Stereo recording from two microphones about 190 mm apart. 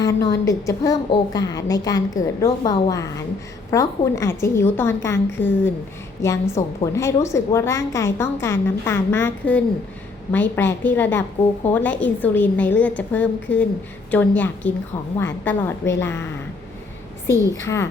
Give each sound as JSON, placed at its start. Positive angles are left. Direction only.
{"t": 0.0, "sound": "a woman's voice", "side_deg": 20}
{"t": 17.5, "sound": "a woman's voice", "side_deg": 15}